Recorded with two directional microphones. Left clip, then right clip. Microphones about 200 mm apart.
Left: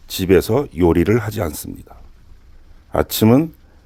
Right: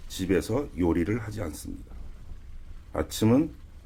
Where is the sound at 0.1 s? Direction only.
45° left (ahead or behind).